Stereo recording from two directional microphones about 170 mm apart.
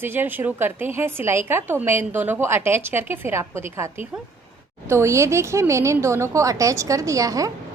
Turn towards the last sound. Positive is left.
turn(degrees=-20)  # may be behind; listen again after turning